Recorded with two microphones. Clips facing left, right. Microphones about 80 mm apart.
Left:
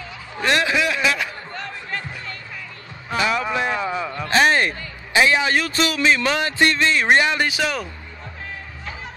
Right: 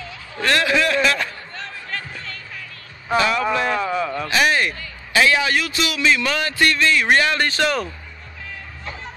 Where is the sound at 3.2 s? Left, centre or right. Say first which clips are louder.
Right 1 dB; centre.